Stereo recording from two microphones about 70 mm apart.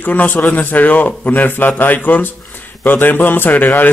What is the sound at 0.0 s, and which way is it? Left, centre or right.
Speech, left.